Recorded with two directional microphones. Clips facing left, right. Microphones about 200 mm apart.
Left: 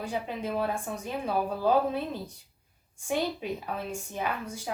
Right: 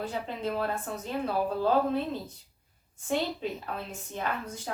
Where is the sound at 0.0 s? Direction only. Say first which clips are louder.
Even; 10° left (ahead or behind).